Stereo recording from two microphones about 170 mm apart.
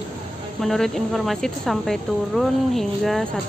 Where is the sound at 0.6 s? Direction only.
Centre (ahead or behind).